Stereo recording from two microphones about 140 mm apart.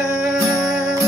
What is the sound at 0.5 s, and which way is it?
Music, 20° right (ahead or behind).